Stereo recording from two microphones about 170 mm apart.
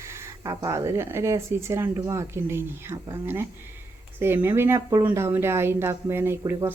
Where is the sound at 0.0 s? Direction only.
15° right (ahead or behind).